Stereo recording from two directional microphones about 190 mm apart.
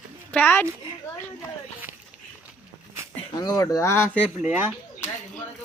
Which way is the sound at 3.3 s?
20° left (ahead or behind).